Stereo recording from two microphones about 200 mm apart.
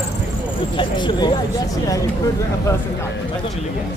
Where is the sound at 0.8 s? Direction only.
25° left (ahead or behind).